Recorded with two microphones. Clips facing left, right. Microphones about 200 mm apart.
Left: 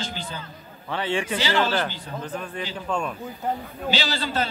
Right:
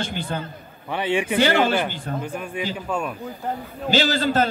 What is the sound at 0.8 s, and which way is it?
Speech, 15° right (ahead or behind).